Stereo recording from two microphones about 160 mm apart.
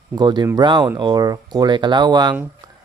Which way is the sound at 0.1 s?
30° right (ahead or behind).